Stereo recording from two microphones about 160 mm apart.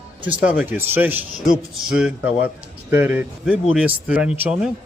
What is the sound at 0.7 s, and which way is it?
Speech, 10° right (ahead or behind).